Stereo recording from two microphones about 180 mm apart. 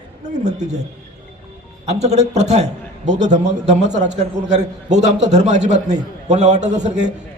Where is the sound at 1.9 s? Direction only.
40° right (ahead or behind).